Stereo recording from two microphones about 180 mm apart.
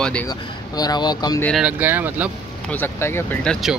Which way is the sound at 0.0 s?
5° left (ahead or behind).